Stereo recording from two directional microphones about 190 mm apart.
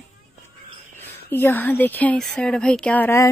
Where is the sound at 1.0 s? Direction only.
10° left (ahead or behind).